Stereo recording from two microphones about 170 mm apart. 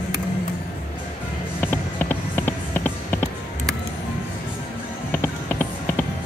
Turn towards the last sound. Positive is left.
turn(degrees=10)  # may be behind; listen again after turning